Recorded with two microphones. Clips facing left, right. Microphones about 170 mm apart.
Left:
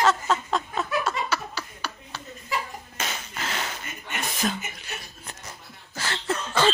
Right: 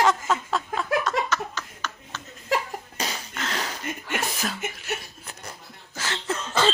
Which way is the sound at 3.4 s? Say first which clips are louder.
Right 2 dB; 5° left (ahead or behind).